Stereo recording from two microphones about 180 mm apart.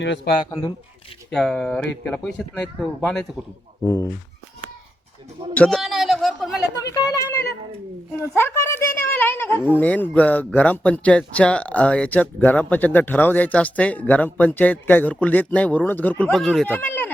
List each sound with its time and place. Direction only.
0.0 s a man's voice: 75° left (ahead or behind)
1.3 s speech: 5° left (ahead or behind)
5.5 s a man's voice: 5° left (ahead or behind)
6.9 s a woman's voice: 20° left (ahead or behind)